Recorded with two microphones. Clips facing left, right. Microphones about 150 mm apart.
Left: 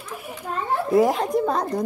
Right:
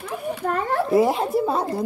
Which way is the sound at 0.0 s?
60° right (ahead or behind).